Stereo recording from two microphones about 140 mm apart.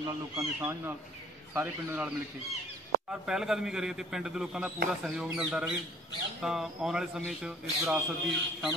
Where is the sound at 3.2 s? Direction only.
5° right (ahead or behind).